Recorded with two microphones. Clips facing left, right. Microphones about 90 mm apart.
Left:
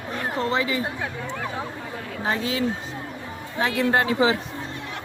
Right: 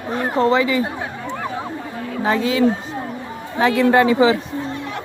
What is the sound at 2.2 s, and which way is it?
Speech, 90° right.